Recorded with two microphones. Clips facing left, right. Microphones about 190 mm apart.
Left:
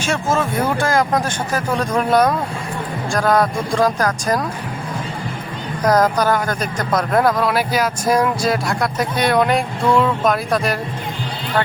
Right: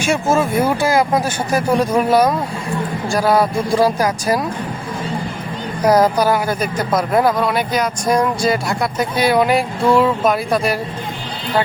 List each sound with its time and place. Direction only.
0.0 s speech: 10° right (ahead or behind)
5.8 s speech: 10° right (ahead or behind)